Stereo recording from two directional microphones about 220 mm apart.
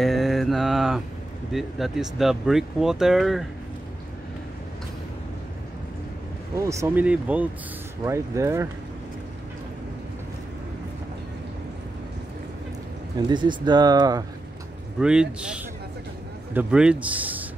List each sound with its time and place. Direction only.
0.0 s mantra: centre (ahead or behind)
1.5 s speech: centre (ahead or behind)
6.7 s speech: 10° right (ahead or behind)
13.3 s speech: 20° right (ahead or behind)
15.0 s speech: 5° right (ahead or behind)